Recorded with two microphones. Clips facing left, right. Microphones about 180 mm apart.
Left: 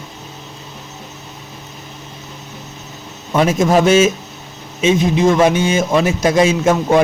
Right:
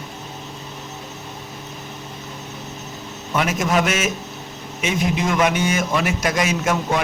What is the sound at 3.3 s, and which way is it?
A man's voice, 30° left (ahead or behind).